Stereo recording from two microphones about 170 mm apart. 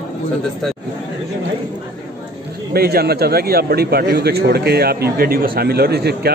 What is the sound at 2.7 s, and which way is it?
A man's voice, 65° right (ahead or behind).